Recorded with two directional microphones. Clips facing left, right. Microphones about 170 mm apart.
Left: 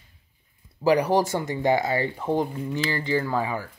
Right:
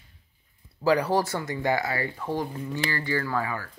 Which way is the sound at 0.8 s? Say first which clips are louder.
Left 3 dB; 15° left (ahead or behind).